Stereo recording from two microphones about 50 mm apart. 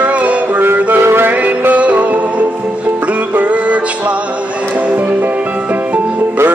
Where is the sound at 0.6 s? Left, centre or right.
Right.